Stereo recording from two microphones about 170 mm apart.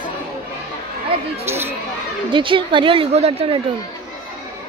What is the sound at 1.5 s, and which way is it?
Speech, 15° right (ahead or behind).